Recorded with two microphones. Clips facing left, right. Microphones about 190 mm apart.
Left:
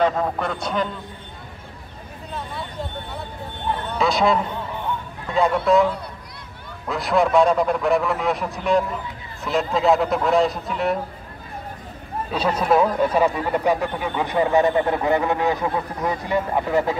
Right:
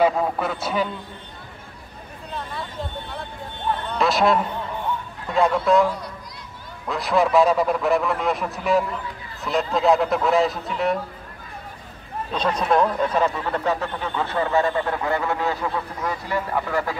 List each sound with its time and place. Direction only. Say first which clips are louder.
0.0 s a man's voice: right 1 dB; 5° right (ahead or behind)
3.9 s a man's voice: even; centre (ahead or behind)
6.9 s a man's voice: left 1 dB; centre (ahead or behind)
12.3 s speech: left 2 dB; 5° left (ahead or behind)